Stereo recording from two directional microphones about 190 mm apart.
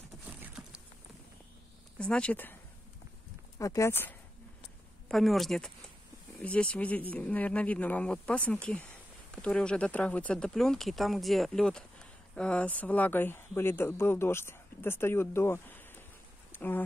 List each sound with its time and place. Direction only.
0.4 s vehicle: 5° right (ahead or behind)
2.0 s speech: 5° left (ahead or behind)
3.5 s speech: 15° left (ahead or behind)
5.0 s speech: centre (ahead or behind)